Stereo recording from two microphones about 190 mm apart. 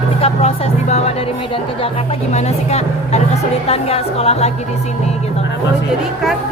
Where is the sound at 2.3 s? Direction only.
35° left (ahead or behind).